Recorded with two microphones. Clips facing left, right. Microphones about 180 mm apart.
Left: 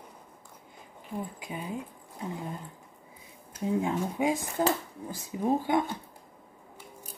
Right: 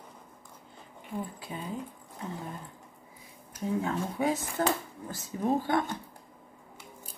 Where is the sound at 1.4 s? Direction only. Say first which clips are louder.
Left 1 dB; 15° left (ahead or behind).